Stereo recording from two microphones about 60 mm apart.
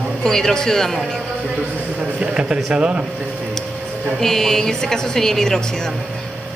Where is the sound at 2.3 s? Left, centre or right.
Centre.